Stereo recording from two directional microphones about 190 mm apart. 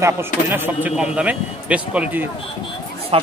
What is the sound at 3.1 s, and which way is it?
Speech, 30° right (ahead or behind).